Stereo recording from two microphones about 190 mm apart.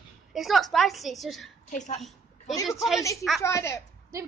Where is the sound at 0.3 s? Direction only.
Centre (ahead or behind).